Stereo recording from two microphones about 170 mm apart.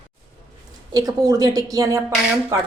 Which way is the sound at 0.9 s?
20° right (ahead or behind).